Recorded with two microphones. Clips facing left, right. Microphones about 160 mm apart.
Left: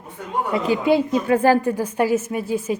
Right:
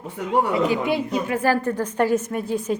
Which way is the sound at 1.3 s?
25° left (ahead or behind).